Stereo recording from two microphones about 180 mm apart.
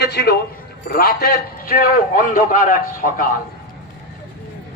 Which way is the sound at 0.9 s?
55° left (ahead or behind).